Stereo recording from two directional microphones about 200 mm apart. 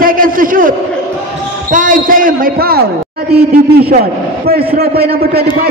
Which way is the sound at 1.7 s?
40° right (ahead or behind).